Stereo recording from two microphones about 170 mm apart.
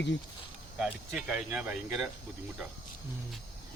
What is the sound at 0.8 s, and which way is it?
Speech, 5° right (ahead or behind).